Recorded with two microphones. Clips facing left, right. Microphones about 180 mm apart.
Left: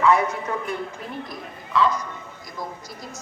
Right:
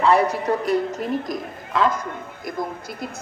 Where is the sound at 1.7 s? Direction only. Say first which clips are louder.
Right 1 dB; 50° right (ahead or behind).